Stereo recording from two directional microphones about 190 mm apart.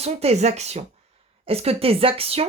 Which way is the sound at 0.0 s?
35° right (ahead or behind).